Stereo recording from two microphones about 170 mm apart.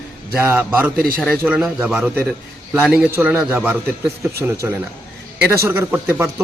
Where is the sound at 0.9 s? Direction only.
60° right (ahead or behind).